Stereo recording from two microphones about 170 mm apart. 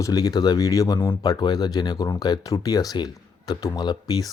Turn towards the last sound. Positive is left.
turn(degrees=20)  # may be behind; listen again after turning